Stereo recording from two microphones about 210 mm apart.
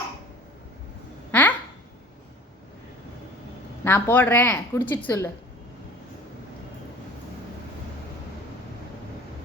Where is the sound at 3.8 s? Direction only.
10° left (ahead or behind).